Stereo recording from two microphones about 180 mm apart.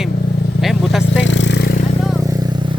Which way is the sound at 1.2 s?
90° left.